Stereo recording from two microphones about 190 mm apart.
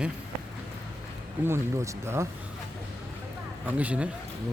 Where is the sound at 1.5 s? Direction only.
15° right (ahead or behind).